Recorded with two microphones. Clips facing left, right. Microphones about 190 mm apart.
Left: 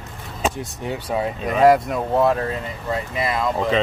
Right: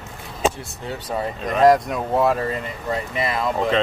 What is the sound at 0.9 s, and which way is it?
Speech, 10° left (ahead or behind).